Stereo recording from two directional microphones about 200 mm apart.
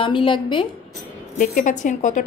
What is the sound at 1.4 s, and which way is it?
Speech, 40° left (ahead or behind).